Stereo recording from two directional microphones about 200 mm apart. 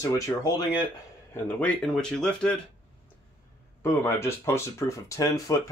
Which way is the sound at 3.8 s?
15° left (ahead or behind).